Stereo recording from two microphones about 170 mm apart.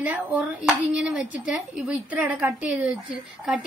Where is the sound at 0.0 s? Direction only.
10° right (ahead or behind).